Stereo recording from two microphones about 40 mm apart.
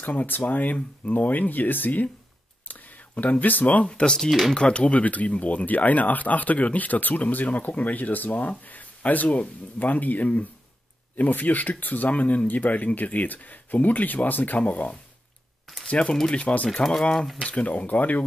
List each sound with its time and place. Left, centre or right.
0.0 s speech: left
3.8 s speech: left
16.3 s speech: left
17.4 s speech: left